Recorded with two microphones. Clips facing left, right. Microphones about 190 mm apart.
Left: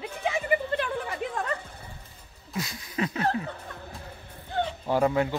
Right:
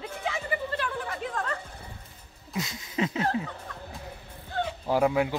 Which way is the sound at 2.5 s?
20° right (ahead or behind).